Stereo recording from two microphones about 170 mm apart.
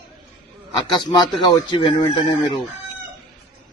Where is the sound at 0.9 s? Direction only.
25° left (ahead or behind).